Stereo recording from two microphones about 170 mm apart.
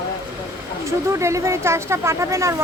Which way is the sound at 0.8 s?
15° right (ahead or behind).